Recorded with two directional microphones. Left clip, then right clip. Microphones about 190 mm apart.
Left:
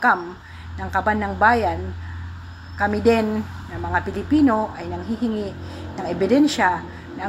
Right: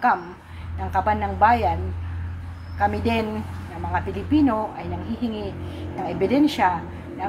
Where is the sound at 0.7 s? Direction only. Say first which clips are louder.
Left 1 dB; 20° left (ahead or behind).